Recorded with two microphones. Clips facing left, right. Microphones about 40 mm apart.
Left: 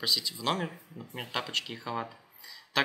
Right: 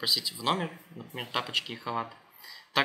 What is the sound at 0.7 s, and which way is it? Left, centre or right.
Speech, right.